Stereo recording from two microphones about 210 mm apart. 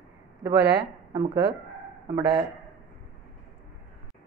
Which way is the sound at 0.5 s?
55° right (ahead or behind).